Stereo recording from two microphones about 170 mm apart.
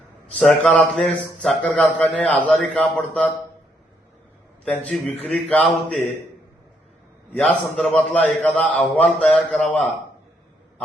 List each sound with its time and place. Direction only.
0.3 s a man's voice: 5° left (ahead or behind)
4.6 s a man's voice: 5° left (ahead or behind)
7.3 s a man's voice: centre (ahead or behind)